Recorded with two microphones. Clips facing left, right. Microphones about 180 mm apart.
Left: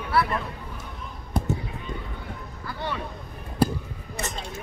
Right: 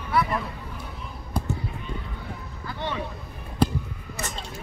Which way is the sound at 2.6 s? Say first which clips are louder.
Right 1 dB; 20° right (ahead or behind).